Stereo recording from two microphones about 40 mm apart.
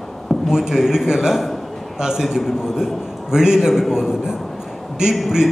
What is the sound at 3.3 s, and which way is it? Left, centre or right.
A man's voice, centre.